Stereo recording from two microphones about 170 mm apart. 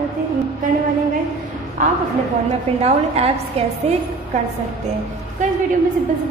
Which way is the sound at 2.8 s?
40° right (ahead or behind).